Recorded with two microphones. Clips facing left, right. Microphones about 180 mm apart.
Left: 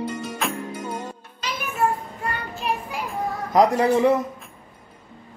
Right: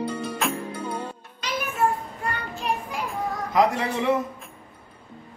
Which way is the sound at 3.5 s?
40° left (ahead or behind).